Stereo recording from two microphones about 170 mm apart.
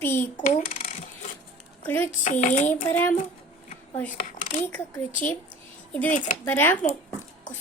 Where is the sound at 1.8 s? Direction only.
10° left (ahead or behind).